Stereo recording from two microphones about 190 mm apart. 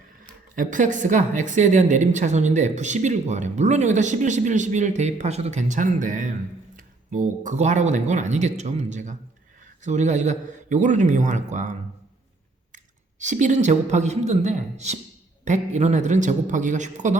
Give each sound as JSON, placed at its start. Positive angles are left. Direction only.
{"t": 0.5, "sound": "a woman's voice", "side_deg": -45}